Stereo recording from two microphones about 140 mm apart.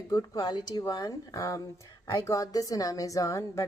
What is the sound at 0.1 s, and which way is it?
A woman's voice, 30° left (ahead or behind).